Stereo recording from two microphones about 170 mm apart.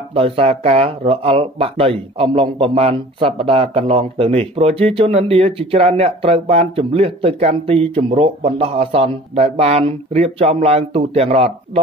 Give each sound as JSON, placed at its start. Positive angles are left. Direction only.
{"t": 0.1, "sound": "speech", "side_deg": -35}